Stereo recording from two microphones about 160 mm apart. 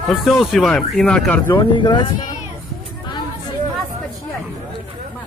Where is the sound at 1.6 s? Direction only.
30° left (ahead or behind).